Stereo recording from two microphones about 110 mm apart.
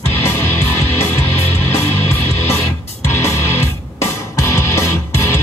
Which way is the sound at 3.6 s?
25° left (ahead or behind).